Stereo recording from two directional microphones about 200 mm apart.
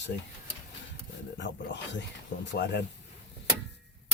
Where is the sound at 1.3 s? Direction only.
60° left (ahead or behind).